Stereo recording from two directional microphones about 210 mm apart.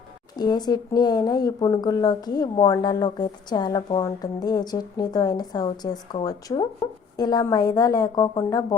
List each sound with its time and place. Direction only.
0.3 s a woman's voice: 20° left (ahead or behind)